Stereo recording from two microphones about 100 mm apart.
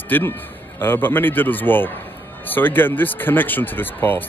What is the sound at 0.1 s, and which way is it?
Speech, 20° left (ahead or behind).